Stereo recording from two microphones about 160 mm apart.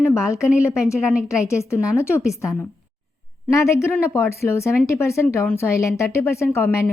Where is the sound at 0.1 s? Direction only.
20° left (ahead or behind).